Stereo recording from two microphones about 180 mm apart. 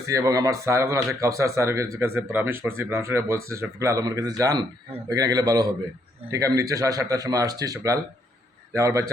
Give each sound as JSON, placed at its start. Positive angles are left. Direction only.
{"t": 0.1, "sound": "speech", "side_deg": -20}